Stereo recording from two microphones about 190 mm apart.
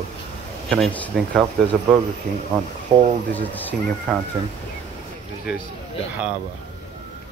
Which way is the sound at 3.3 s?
10° left (ahead or behind).